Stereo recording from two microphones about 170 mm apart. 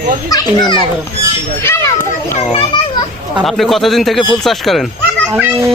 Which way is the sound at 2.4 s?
35° left (ahead or behind).